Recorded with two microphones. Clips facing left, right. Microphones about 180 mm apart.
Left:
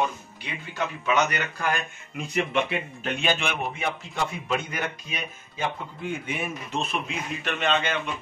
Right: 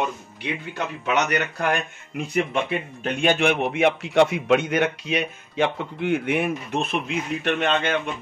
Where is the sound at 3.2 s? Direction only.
60° right (ahead or behind).